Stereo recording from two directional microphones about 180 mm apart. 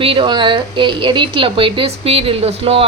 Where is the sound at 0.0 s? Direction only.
30° right (ahead or behind).